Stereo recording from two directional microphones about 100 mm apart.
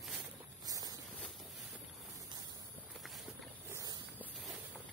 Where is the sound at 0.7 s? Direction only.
40° right (ahead or behind).